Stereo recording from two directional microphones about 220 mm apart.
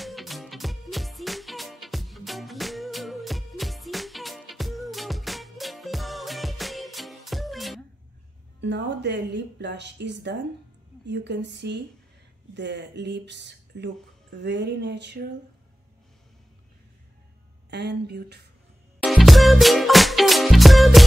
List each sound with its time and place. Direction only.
0.0 s music: centre (ahead or behind)
8.5 s speech: 50° right (ahead or behind)
17.6 s speech: 50° right (ahead or behind)
19.0 s music: centre (ahead or behind)